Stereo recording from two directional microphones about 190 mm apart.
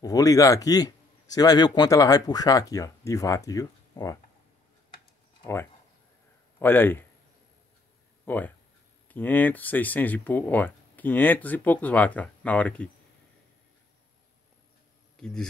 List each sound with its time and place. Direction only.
0.0 s speech: 20° left (ahead or behind)
6.6 s speech: 10° left (ahead or behind)
8.3 s speech: 10° left (ahead or behind)
15.1 s speech: 5° left (ahead or behind)